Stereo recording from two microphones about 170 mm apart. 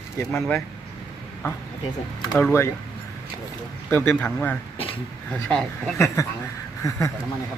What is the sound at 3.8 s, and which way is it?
Speech, 10° left (ahead or behind).